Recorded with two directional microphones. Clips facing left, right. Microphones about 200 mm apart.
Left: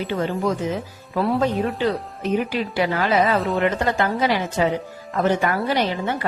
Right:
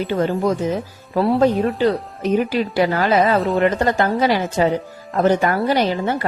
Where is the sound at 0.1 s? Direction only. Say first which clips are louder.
Right 4 dB; 30° right (ahead or behind).